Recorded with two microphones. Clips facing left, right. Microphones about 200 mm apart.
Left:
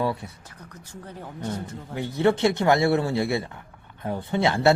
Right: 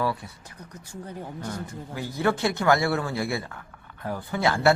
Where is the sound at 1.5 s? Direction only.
25° left (ahead or behind).